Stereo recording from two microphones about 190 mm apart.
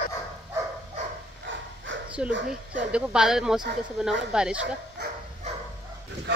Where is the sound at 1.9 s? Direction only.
80° right.